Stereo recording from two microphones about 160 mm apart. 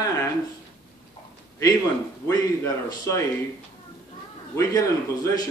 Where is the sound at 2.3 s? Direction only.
20° left (ahead or behind).